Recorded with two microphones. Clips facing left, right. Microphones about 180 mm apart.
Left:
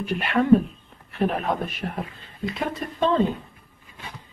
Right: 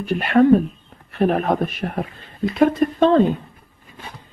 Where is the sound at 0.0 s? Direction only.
45° right (ahead or behind).